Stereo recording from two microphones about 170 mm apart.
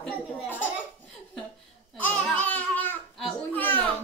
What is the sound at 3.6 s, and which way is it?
Music, 10° left (ahead or behind).